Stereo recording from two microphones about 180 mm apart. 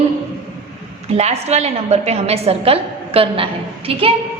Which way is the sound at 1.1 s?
35° right (ahead or behind).